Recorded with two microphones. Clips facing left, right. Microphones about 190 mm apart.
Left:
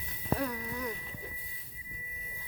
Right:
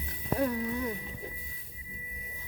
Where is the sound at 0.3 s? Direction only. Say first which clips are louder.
Right 6 dB; 30° right (ahead or behind).